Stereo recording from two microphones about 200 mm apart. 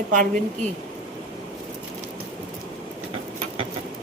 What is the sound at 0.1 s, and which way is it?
Speech, 40° right (ahead or behind).